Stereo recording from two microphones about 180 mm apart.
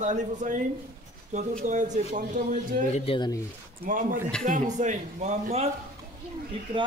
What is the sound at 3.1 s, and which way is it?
Speech, 25° left (ahead or behind).